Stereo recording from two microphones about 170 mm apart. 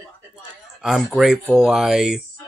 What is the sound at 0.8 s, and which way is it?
Speech, centre (ahead or behind).